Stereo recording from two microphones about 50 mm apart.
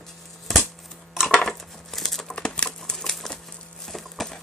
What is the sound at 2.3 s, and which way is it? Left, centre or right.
Crumpling, centre.